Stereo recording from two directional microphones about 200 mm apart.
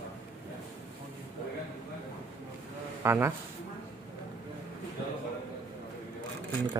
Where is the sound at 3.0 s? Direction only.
10° right (ahead or behind).